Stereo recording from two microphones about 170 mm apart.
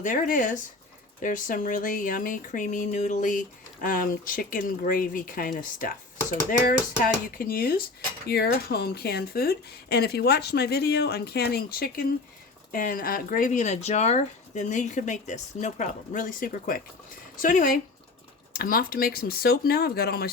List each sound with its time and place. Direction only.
0.0 s speech: 50° left (ahead or behind)